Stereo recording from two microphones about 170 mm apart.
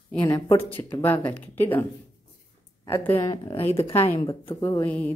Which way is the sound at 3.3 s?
30° left (ahead or behind).